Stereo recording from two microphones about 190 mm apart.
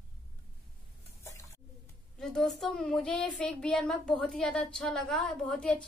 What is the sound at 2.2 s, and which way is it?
A woman's voice, centre (ahead or behind).